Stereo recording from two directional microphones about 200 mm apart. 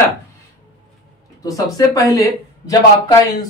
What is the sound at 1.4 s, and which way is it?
Speech, 15° left (ahead or behind).